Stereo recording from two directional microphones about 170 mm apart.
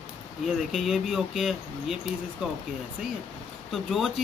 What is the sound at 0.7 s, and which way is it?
Speech, centre (ahead or behind).